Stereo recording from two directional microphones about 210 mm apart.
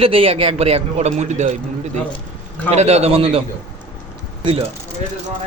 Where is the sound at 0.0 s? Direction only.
25° right (ahead or behind).